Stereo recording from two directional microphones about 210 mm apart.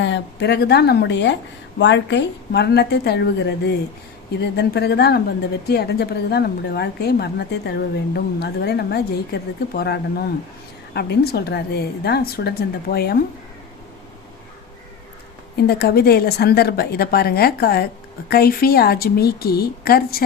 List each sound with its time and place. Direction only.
0.0 s a woman's voice: 55° left (ahead or behind)
4.5 s a woman's voice: 50° left (ahead or behind)
15.5 s a woman's voice: 50° left (ahead or behind)